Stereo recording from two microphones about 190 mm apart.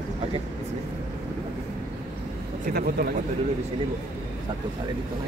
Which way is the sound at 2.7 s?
55° right (ahead or behind).